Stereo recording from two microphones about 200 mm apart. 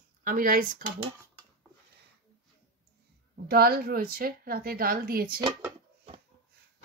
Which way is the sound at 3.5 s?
50° right (ahead or behind).